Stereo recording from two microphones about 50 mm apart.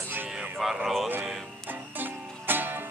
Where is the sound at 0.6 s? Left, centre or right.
Centre.